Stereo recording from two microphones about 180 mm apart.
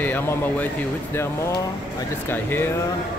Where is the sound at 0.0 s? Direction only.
10° left (ahead or behind).